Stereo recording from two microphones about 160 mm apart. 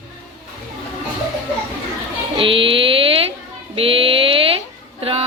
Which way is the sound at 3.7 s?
35° right (ahead or behind).